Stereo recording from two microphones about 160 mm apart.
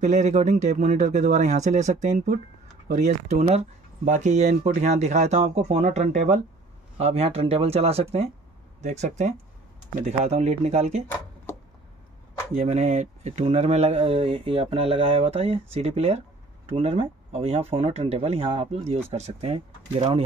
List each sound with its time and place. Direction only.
0.0 s speech: 45° right (ahead or behind)
12.5 s speech: 45° right (ahead or behind)